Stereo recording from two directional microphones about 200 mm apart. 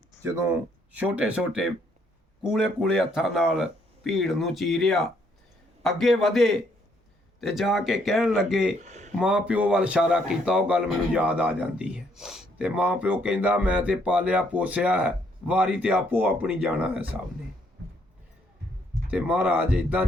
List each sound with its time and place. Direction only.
0.2 s speech: 15° right (ahead or behind)
8.8 s speech: 35° right (ahead or behind)
9.1 s speech: 5° right (ahead or behind)
19.1 s speech: 5° right (ahead or behind)